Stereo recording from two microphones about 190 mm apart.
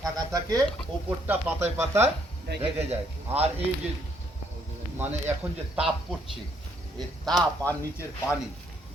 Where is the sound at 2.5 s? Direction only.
65° right (ahead or behind).